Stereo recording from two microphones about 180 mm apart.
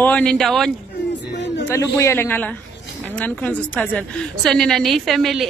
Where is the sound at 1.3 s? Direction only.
75° left (ahead or behind).